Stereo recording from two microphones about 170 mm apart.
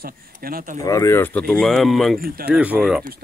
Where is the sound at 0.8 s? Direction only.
20° left (ahead or behind); by 3.1 s 5° right (ahead or behind).